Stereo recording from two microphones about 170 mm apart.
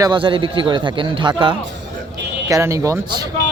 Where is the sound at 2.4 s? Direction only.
15° right (ahead or behind).